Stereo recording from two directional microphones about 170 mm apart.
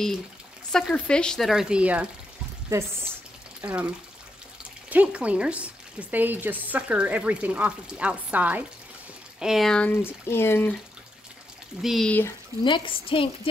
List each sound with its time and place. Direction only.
0.7 s speech: 5° left (ahead or behind)
2.7 s speech: 20° right (ahead or behind)
3.6 s speech: 5° right (ahead or behind); by 10.8 s 10° left (ahead or behind)
11.8 s speech: centre (ahead or behind)
12.6 s a woman's voice: 30° left (ahead or behind)